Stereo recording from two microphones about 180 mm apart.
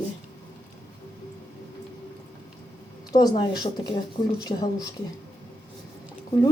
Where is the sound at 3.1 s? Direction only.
20° left (ahead or behind).